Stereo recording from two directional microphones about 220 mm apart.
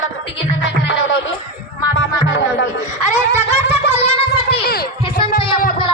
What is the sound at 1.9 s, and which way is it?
Music, 55° left (ahead or behind).